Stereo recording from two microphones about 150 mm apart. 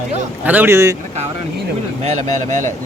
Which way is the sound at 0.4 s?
10° right (ahead or behind).